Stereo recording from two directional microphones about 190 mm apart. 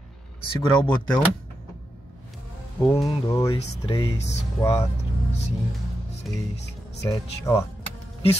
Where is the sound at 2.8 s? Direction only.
5° left (ahead or behind).